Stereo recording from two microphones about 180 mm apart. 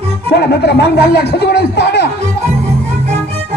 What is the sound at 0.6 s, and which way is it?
Speech, 65° left (ahead or behind).